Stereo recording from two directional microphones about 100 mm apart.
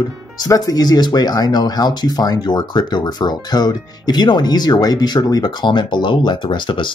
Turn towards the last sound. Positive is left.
turn(degrees=55)  # may be behind; listen again after turning